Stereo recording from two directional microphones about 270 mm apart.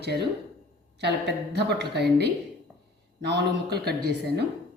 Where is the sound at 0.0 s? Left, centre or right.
Right.